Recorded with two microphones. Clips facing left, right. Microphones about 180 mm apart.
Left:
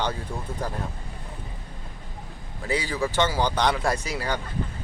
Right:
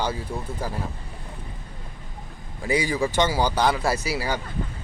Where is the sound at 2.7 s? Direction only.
15° right (ahead or behind).